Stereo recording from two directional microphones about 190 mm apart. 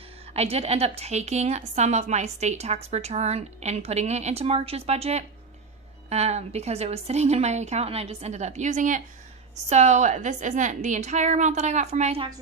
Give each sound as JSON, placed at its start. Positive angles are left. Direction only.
{"t": 0.3, "sound": "a woman's voice", "side_deg": -35}